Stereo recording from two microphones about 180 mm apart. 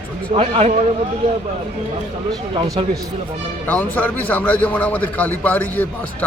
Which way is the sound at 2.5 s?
25° right (ahead or behind).